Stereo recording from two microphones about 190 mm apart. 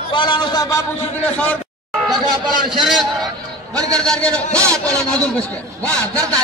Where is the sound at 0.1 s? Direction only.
25° left (ahead or behind).